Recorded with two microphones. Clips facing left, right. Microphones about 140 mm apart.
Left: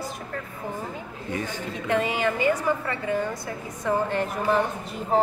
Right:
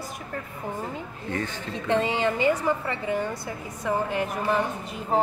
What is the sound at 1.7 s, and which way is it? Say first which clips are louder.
A woman's voice: right 1 dB; 25° right (ahead or behind).